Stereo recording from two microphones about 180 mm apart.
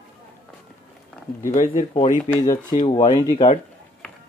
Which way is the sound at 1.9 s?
35° left (ahead or behind).